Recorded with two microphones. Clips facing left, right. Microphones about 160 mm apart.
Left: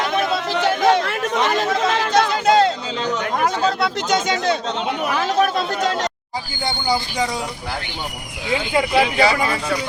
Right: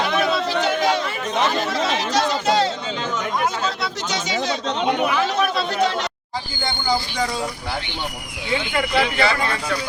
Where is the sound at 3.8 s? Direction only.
55° left (ahead or behind).